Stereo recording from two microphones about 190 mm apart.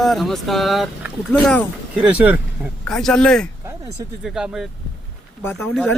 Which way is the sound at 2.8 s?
Centre (ahead or behind).